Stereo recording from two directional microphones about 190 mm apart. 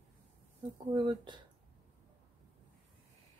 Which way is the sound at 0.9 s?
25° right (ahead or behind).